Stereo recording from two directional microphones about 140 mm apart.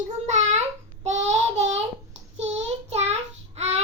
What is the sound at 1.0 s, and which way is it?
Child singing, 55° right (ahead or behind).